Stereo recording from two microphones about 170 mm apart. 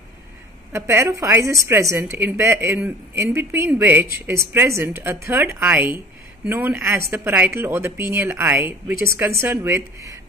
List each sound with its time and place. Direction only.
0.7 s a woman's voice: 15° right (ahead or behind)